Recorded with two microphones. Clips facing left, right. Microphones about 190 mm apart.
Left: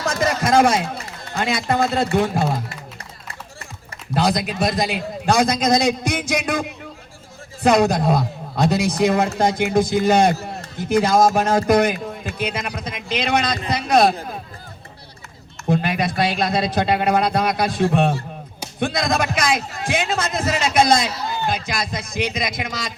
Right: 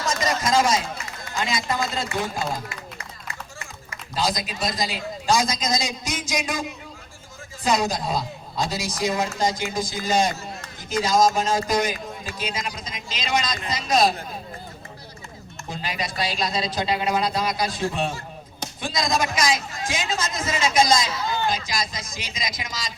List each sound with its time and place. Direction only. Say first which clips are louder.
0.0 s a sound: left 4 dB; 60° left (ahead or behind)
1.3 s a man's voice: left 5 dB; 60° left (ahead or behind)
4.1 s a man's voice: left 6 dB; 60° left (ahead or behind)
15.7 s a man's voice: left 10 dB; 60° left (ahead or behind)